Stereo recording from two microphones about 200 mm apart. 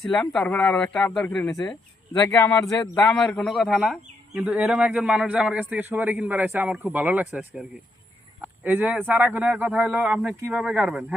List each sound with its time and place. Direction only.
0.0 s speech: centre (ahead or behind)
1.5 s a man's voice: 15° left (ahead or behind); by 11.0 s 5° right (ahead or behind)